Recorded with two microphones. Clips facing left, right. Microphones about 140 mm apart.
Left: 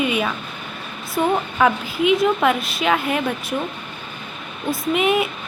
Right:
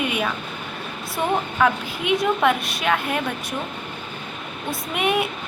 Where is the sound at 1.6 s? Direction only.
5° left (ahead or behind).